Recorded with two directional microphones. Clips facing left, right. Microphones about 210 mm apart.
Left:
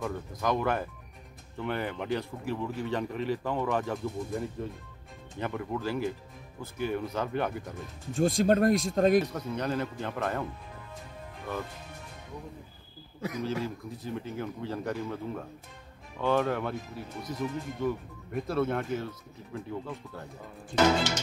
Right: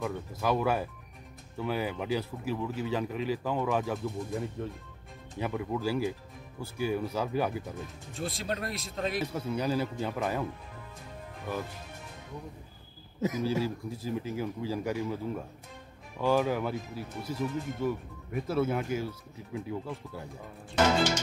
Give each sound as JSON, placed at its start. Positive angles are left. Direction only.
{"t": 0.0, "sound": "speech", "side_deg": -5}
{"t": 8.2, "sound": "speech", "side_deg": 45}
{"t": 9.2, "sound": "speech", "side_deg": -10}
{"t": 13.4, "sound": "speech", "side_deg": -10}